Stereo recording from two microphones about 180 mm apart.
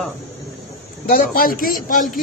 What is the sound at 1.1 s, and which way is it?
Speech, 55° left (ahead or behind).